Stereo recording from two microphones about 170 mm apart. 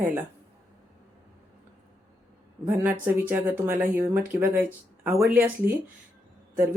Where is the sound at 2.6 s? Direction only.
10° right (ahead or behind).